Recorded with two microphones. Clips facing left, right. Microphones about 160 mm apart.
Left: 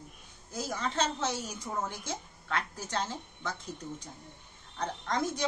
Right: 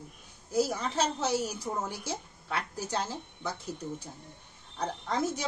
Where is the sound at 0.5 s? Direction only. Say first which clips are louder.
Right 6 dB; 10° right (ahead or behind).